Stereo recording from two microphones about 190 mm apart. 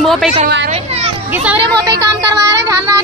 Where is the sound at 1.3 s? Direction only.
5° right (ahead or behind).